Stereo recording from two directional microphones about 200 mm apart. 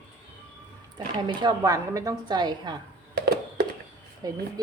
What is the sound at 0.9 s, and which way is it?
A woman's voice, 20° right (ahead or behind).